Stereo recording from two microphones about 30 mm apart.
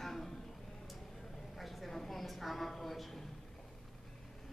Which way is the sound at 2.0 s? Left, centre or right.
Centre.